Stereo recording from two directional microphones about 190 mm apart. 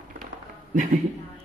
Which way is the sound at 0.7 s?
45° right (ahead or behind).